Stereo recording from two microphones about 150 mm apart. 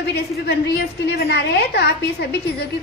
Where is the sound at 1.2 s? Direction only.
90° left.